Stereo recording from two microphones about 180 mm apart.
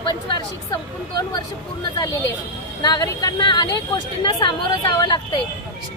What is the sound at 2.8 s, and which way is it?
Speech, 20° left (ahead or behind).